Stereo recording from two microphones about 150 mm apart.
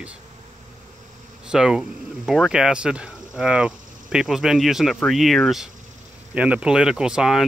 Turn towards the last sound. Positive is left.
turn(degrees=-5)  # may be behind; listen again after turning